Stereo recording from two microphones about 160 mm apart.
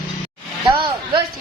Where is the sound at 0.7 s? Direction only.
30° right (ahead or behind).